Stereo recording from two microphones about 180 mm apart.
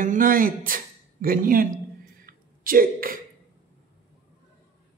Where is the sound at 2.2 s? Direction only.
50° right (ahead or behind).